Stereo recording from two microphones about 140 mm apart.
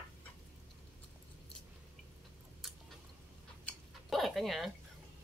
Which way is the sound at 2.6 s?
Centre (ahead or behind).